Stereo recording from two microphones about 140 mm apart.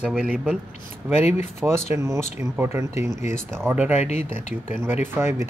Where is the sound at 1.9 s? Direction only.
20° right (ahead or behind).